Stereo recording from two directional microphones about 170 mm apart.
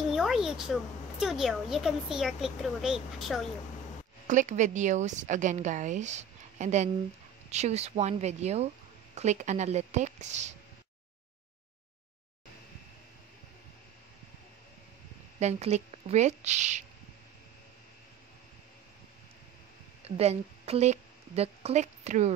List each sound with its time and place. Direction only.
0.1 s a child's voice: centre (ahead or behind)
4.3 s a woman's voice: 45° right (ahead or behind)
15.3 s a woman's voice: 40° right (ahead or behind)
20.1 s a woman's voice: 35° right (ahead or behind)